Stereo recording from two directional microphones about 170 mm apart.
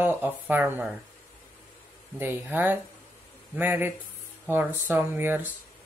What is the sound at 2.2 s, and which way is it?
Speech, 10° right (ahead or behind).